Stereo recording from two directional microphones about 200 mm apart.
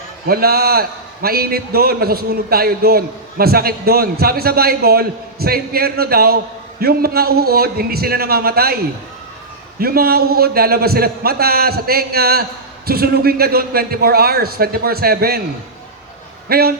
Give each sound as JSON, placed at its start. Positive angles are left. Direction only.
{"t": 0.3, "sound": "a man's voice", "side_deg": -50}
{"t": 16.5, "sound": "a man's voice", "side_deg": -50}